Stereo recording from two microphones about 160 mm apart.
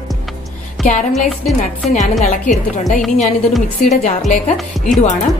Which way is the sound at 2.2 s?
55° left (ahead or behind).